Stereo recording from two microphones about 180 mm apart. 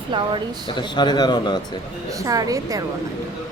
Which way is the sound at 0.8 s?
25° left (ahead or behind).